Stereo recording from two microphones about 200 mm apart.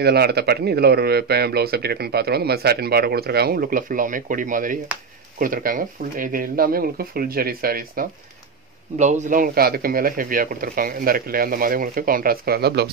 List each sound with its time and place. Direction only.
0.0 s speech: 55° right (ahead or behind)
8.9 s speech: 35° right (ahead or behind); by 12.9 s 55° right (ahead or behind)